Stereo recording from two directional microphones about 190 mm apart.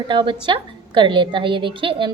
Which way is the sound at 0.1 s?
25° right (ahead or behind).